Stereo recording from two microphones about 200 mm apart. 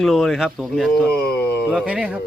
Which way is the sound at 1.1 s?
50° left (ahead or behind).